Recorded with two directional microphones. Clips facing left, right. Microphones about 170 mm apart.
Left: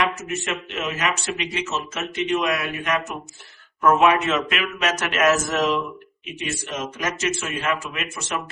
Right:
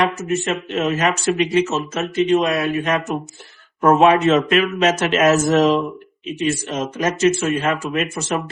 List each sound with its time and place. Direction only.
0.0 s speech: 30° right (ahead or behind)